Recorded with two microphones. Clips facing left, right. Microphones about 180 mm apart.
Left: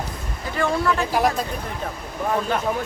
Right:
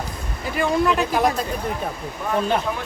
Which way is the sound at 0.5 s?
15° right (ahead or behind).